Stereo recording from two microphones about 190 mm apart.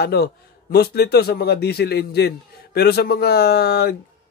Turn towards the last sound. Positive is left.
turn(degrees=55)  # may be behind; listen again after turning